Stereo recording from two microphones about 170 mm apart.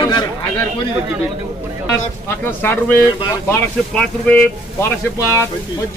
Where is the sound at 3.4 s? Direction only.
5° left (ahead or behind).